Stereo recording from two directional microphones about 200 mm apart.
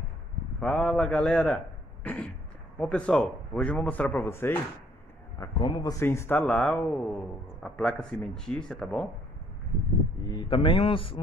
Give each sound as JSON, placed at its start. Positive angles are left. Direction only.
{"t": 0.6, "sound": "speech", "side_deg": 5}
{"t": 2.0, "sound": "a sound", "side_deg": 5}
{"t": 2.8, "sound": "speech", "side_deg": 5}
{"t": 10.3, "sound": "a man's voice", "side_deg": 25}